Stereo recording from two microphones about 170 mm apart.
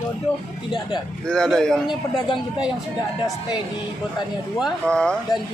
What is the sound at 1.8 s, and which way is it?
Speech, 25° left (ahead or behind).